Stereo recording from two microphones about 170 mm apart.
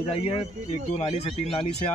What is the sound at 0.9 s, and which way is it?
Speech, 40° left (ahead or behind).